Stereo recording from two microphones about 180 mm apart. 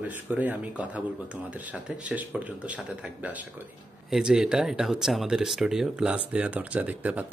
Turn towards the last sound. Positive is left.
turn(degrees=-10)  # may be behind; listen again after turning